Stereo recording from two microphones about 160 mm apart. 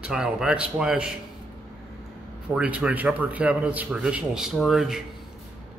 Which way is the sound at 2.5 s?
5° right (ahead or behind).